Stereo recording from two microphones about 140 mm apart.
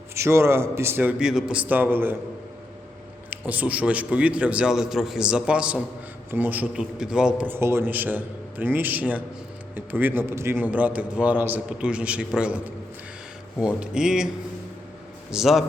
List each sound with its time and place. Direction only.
0.1 s a man's voice: 20° right (ahead or behind)
1.2 s a man's voice: 5° right (ahead or behind)
3.2 s a man's voice: 10° right (ahead or behind)
15.3 s speech: 5° right (ahead or behind)